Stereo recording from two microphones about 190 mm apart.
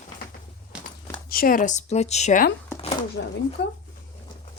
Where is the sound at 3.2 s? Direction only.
65° left (ahead or behind).